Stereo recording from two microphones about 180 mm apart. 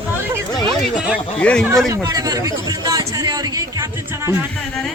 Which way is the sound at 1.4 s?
5° left (ahead or behind).